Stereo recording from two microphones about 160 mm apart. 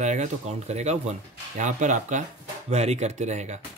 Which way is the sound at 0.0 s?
50° right (ahead or behind).